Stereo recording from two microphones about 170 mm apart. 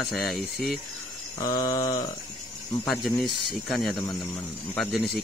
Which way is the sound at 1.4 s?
20° left (ahead or behind).